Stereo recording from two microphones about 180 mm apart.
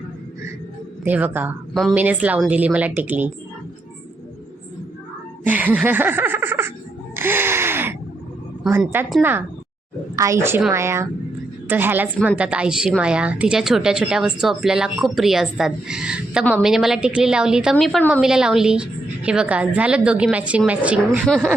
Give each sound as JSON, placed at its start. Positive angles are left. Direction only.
{"t": 1.0, "sound": "speech", "side_deg": -10}
{"t": 5.5, "sound": "speech", "side_deg": -10}
{"t": 7.2, "sound": "a sound", "side_deg": -10}
{"t": 8.8, "sound": "speech", "side_deg": -10}
{"t": 10.2, "sound": "speech", "side_deg": -15}